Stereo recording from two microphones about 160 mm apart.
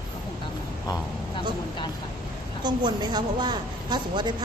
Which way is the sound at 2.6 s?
25° right (ahead or behind).